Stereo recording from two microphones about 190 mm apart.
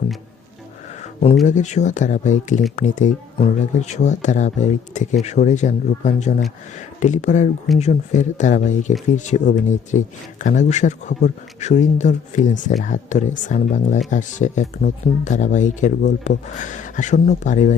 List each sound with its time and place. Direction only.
1.5 s speech: 40° left (ahead or behind)